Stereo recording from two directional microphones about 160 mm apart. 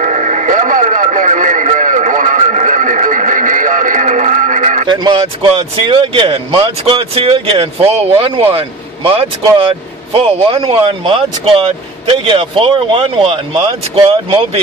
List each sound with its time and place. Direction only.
0.0 s radio: 50° right (ahead or behind)
4.8 s speech: 30° right (ahead or behind)